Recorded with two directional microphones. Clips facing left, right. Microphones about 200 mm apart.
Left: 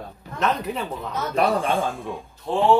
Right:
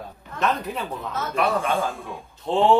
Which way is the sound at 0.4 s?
Centre (ahead or behind).